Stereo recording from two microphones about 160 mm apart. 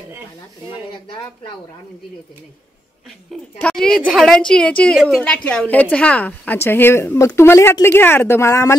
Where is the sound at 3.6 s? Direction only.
5° left (ahead or behind).